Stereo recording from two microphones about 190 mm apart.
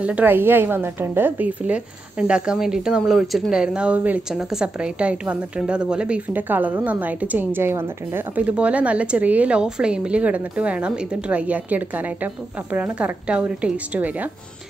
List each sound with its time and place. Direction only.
0.0 s a woman's voice: 10° right (ahead or behind)